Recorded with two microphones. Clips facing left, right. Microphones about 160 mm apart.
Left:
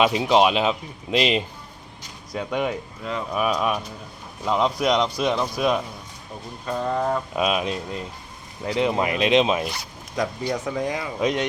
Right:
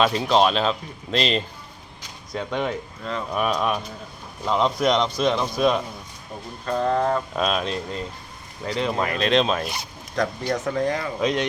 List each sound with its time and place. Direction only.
0.0 s speech: 15° left (ahead or behind)